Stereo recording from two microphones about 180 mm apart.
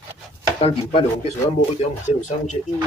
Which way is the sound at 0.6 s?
30° left (ahead or behind).